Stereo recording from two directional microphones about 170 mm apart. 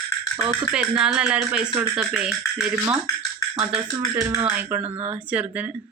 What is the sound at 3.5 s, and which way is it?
Speech, 35° right (ahead or behind).